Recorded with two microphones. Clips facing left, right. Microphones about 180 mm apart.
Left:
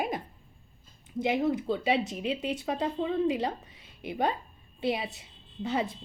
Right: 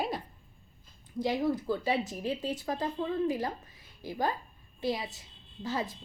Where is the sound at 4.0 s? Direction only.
25° left (ahead or behind).